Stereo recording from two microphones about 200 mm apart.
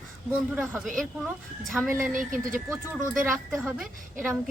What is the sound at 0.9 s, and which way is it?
A woman's voice, centre (ahead or behind).